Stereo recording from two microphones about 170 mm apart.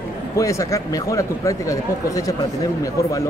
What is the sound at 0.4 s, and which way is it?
Speech, 20° left (ahead or behind).